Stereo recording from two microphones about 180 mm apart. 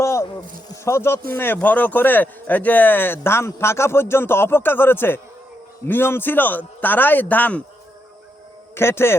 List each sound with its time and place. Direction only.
0.0 s a sound: 15° left (ahead or behind)
0.9 s speech: 15° left (ahead or behind)
8.7 s a man's voice: 15° left (ahead or behind)